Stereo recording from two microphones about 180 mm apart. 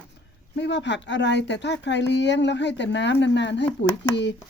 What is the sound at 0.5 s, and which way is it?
Speech, 75° left (ahead or behind).